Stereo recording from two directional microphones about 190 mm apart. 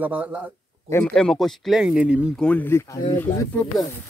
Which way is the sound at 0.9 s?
5° left (ahead or behind).